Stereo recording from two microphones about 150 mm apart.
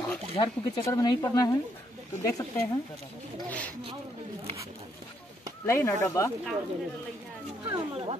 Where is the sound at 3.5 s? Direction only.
10° left (ahead or behind).